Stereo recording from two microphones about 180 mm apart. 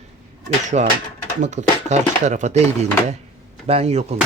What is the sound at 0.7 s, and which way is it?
Speech, 50° right (ahead or behind).